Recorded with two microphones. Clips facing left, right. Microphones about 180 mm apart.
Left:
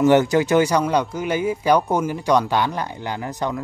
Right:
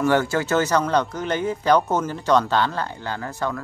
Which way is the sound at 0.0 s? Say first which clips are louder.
Left 5 dB; 20° left (ahead or behind).